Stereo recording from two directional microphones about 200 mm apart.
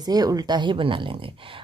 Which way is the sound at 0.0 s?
20° right (ahead or behind).